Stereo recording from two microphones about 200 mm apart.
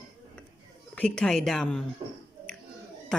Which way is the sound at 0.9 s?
5° left (ahead or behind).